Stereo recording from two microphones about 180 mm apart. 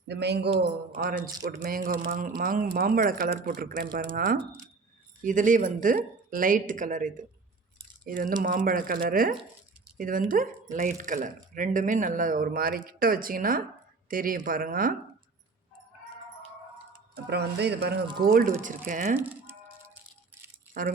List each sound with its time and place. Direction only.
0.1 s speech: 70° right (ahead or behind)
0.9 s speech: 50° right (ahead or behind)
17.2 s speech: 70° right (ahead or behind)
18.2 s speech: 55° right (ahead or behind)
19.1 s music: 10° right (ahead or behind)
20.8 s speech: 50° right (ahead or behind)